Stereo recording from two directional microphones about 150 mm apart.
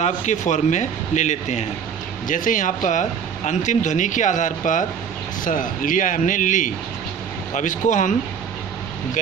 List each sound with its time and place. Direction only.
0.0 s speech: 50° left (ahead or behind)
2.2 s speech: 60° left (ahead or behind)